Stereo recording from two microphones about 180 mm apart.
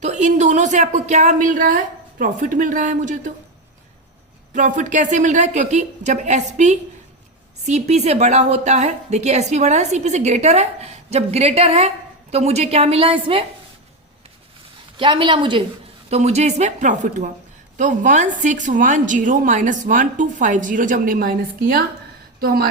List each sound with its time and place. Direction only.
0.0 s a woman's voice: 40° right (ahead or behind)
4.5 s a woman's voice: 45° right (ahead or behind); by 13.4 s 30° right (ahead or behind)
14.9 s a woman's voice: 25° right (ahead or behind); by 22.7 s 55° right (ahead or behind)